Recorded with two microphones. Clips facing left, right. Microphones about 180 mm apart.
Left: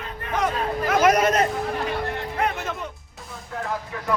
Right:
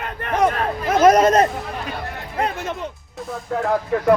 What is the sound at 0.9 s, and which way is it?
Chatter, 35° right (ahead or behind).